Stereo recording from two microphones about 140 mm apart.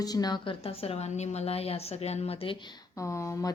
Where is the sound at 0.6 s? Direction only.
45° left (ahead or behind); by 3.5 s 25° left (ahead or behind).